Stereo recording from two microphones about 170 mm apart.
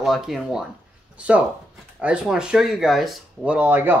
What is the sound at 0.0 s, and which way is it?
Speech, centre (ahead or behind).